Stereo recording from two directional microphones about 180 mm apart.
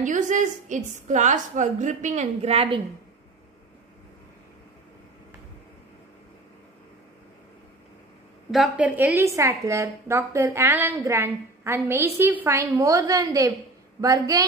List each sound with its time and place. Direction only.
0.0 s a woman's voice: 45° right (ahead or behind)
8.5 s a woman's voice: 5° right (ahead or behind); by 14.4 s 20° right (ahead or behind)